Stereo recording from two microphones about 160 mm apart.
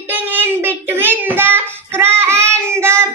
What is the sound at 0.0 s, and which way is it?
Child singing, 10° right (ahead or behind).